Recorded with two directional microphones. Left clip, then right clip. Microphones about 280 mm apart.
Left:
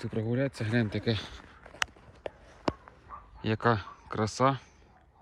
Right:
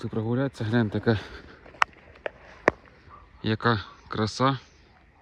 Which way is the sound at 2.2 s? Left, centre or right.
Left.